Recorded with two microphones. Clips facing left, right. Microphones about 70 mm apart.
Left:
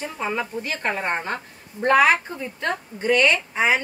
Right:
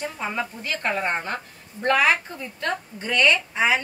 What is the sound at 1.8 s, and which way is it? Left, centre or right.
A woman's voice, left.